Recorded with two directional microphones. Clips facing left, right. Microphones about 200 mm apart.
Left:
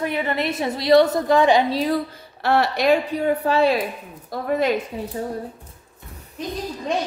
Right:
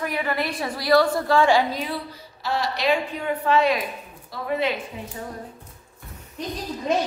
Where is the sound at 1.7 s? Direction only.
40° left (ahead or behind).